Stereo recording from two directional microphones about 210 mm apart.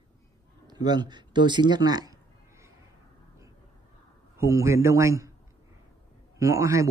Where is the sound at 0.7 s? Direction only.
20° right (ahead or behind).